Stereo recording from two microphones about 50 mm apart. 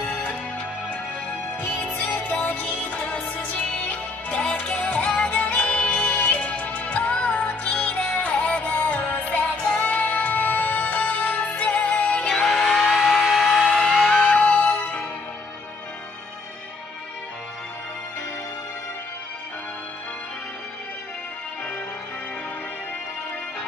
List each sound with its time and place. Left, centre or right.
0.1 s music: left
12.4 s a sound: centre
13.0 s music: centre
14.3 s music: left